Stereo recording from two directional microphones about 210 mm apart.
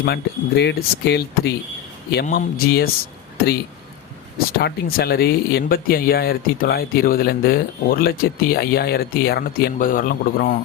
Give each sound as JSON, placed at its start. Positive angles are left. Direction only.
{"t": 0.0, "sound": "speech", "side_deg": 55}
{"t": 4.4, "sound": "speech", "side_deg": 45}